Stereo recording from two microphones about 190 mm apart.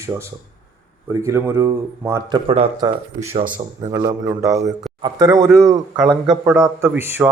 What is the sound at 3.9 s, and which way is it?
Speech, 15° right (ahead or behind).